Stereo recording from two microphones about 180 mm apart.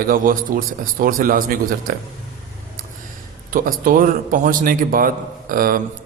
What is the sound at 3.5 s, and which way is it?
A man's voice, 50° right (ahead or behind).